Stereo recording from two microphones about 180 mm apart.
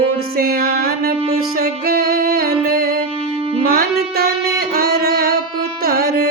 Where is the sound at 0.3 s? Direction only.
55° right (ahead or behind).